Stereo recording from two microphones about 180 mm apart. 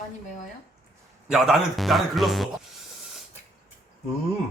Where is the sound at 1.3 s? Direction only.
5° right (ahead or behind).